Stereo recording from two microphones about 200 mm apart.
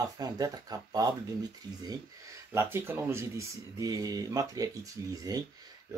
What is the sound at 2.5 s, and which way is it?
Speech, 15° right (ahead or behind).